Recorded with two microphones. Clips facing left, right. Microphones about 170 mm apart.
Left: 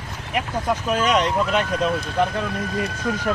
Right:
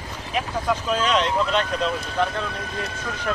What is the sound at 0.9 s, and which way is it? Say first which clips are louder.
Speech: left 3 dB; 10° left (ahead or behind).